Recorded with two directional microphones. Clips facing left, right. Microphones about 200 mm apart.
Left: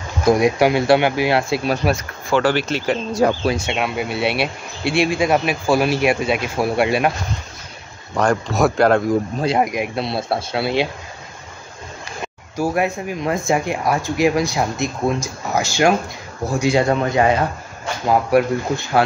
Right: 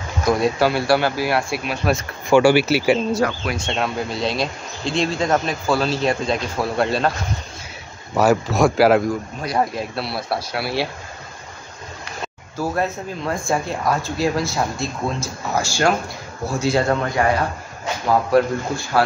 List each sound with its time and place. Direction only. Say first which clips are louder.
0.2 s speech: left 3 dB; 20° left (ahead or behind)
2.2 s speech: right 4 dB; 10° right (ahead or behind)
3.5 s speech: left 1 dB; 5° left (ahead or behind)
4.1 s speech: left 2 dB; 65° left (ahead or behind)
4.8 s speech: left 3 dB; 10° left (ahead or behind)
8.2 s speech: right 1 dB; 5° right (ahead or behind)
9.6 s speech: left 2 dB; 15° left (ahead or behind)
12.5 s speech: left 3 dB; 15° left (ahead or behind)